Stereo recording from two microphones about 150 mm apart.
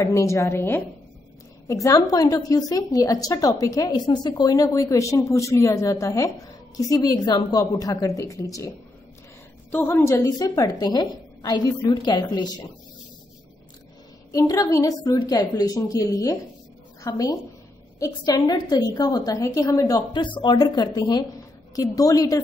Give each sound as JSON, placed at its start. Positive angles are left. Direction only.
{"t": 0.0, "sound": "a woman's voice", "side_deg": 20}
{"t": 14.3, "sound": "a woman's voice", "side_deg": 25}